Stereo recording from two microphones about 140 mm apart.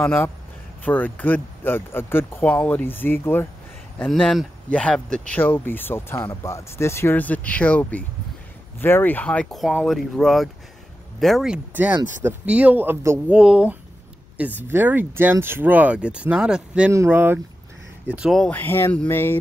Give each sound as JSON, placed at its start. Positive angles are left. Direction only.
{"t": 0.0, "sound": "speech", "side_deg": 15}
{"t": 4.1, "sound": "speech", "side_deg": 0}
{"t": 13.4, "sound": "speech", "side_deg": -5}
{"t": 16.9, "sound": "speech", "side_deg": -20}
{"t": 18.3, "sound": "speech", "side_deg": 5}
{"t": 18.6, "sound": "speech", "side_deg": 15}